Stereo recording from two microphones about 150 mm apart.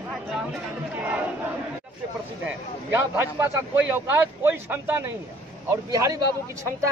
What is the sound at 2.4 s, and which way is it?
A man's voice, 15° right (ahead or behind).